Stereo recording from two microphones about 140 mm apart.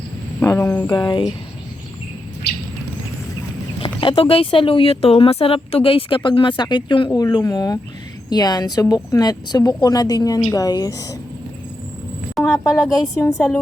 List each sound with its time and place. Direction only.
0.3 s speech: 20° left (ahead or behind)
0.9 s speech: 30° left (ahead or behind)
3.8 s a woman's voice: 40° left (ahead or behind)
12.5 s a woman's voice: 25° left (ahead or behind)